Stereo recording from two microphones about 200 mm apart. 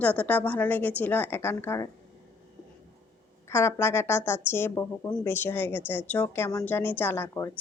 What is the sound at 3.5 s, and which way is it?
A woman's voice, 15° left (ahead or behind).